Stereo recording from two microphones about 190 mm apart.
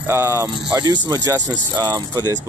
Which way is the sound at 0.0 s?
15° right (ahead or behind).